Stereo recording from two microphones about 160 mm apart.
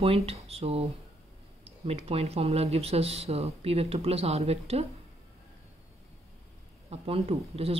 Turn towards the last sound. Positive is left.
turn(degrees=-40)  # may be behind; listen again after turning